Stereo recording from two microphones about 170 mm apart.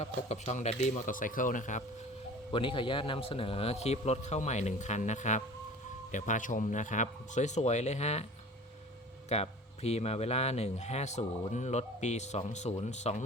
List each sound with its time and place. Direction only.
0.0 s speech: 40° left (ahead or behind)
2.5 s a man's voice: 30° left (ahead or behind)
9.3 s a man's voice: 40° left (ahead or behind)